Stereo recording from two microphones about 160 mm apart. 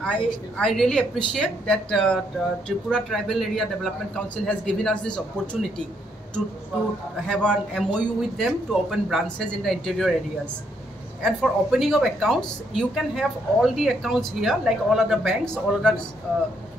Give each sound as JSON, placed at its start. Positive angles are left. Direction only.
{"t": 0.0, "sound": "a woman's voice", "side_deg": 5}
{"t": 7.2, "sound": "a woman's voice", "side_deg": 0}